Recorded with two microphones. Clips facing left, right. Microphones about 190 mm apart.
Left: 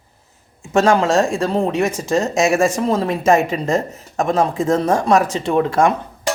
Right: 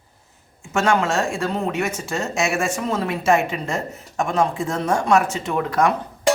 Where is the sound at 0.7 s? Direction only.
35° left (ahead or behind).